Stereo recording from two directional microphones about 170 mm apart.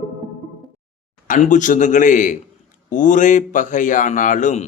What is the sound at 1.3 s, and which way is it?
Speech, 50° left (ahead or behind).